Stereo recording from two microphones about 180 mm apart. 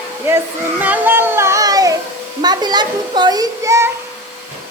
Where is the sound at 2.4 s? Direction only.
25° right (ahead or behind).